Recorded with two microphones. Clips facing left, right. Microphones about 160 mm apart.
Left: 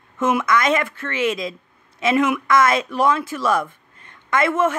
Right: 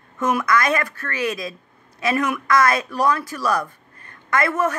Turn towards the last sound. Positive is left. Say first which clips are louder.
# left 2 dB
turn(degrees=25)  # may be behind; listen again after turning